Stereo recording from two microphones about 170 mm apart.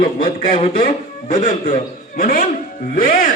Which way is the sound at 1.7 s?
55° left (ahead or behind).